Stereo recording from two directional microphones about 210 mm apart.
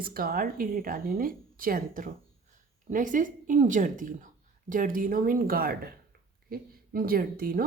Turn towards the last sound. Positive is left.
turn(degrees=-45)  # may be behind; listen again after turning